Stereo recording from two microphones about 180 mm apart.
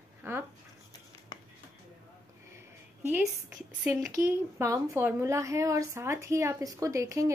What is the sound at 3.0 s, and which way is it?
A woman's voice, 10° right (ahead or behind).